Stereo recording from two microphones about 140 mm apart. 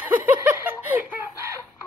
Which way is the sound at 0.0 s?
15° right (ahead or behind).